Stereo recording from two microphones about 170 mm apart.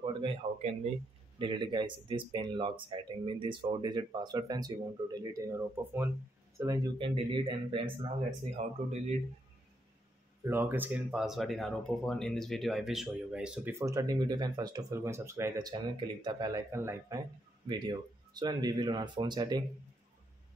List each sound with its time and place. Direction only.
0.0 s a man's voice: 30° right (ahead or behind)
1.4 s speech: 30° right (ahead or behind)
10.4 s speech: 15° right (ahead or behind)